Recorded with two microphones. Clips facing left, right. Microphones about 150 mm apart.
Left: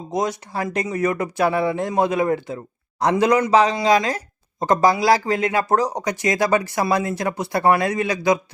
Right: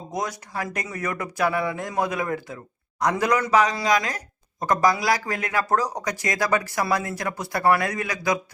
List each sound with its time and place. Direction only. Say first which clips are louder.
0.1 s speech: left 6 dB; 25° left (ahead or behind)